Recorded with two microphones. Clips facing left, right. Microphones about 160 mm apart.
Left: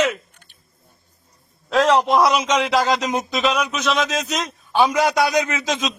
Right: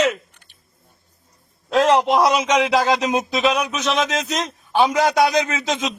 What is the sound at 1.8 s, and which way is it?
A man's voice, 20° right (ahead or behind).